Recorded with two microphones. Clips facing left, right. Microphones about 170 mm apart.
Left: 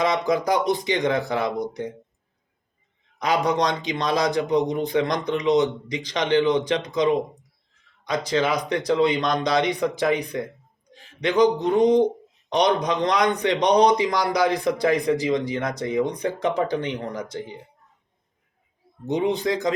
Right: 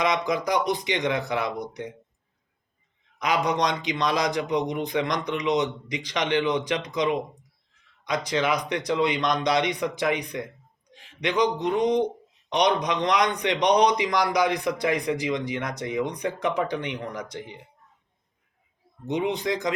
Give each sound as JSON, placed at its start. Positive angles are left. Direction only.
{"t": 0.0, "sound": "a man's voice", "side_deg": 30}
{"t": 3.2, "sound": "a man's voice", "side_deg": 30}
{"t": 19.0, "sound": "a man's voice", "side_deg": 35}